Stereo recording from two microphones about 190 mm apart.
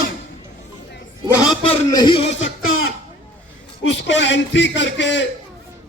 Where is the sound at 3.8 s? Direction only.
70° left (ahead or behind).